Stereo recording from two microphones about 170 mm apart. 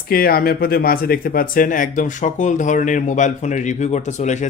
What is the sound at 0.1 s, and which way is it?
Speech, 60° left (ahead or behind).